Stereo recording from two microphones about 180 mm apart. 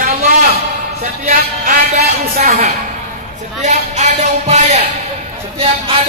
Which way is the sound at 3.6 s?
40° right (ahead or behind).